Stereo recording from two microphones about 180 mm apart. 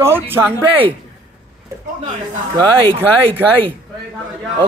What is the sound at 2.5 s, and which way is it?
Speech, 30° right (ahead or behind).